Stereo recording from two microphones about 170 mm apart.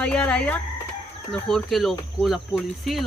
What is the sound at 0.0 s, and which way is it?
Speech, 5° left (ahead or behind).